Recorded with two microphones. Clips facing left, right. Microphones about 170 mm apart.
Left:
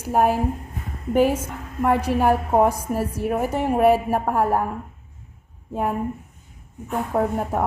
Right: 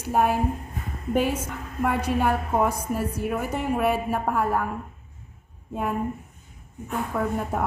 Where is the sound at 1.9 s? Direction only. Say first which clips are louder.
Left 6 dB; 40° left (ahead or behind).